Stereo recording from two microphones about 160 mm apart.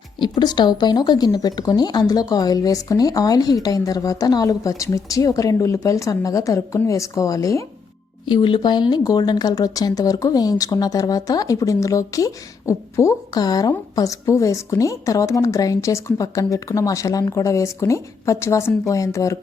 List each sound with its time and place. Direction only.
0.2 s speech: 30° left (ahead or behind)
8.3 s speech: 30° left (ahead or behind)